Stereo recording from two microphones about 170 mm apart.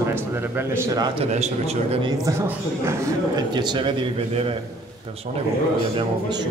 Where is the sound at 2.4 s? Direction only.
15° right (ahead or behind).